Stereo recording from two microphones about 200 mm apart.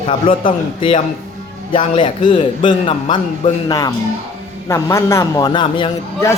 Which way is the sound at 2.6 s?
25° left (ahead or behind).